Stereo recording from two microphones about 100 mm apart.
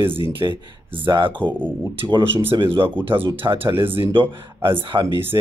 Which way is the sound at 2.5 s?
60° right (ahead or behind).